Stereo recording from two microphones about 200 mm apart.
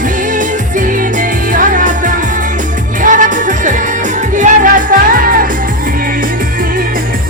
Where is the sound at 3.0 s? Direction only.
40° right (ahead or behind).